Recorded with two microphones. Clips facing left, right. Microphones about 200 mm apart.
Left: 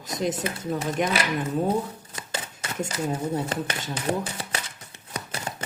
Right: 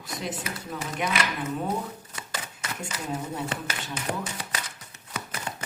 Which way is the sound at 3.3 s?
40° left (ahead or behind).